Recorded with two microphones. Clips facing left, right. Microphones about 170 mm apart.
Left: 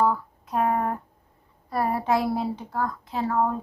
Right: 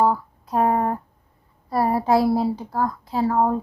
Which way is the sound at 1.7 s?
35° right (ahead or behind).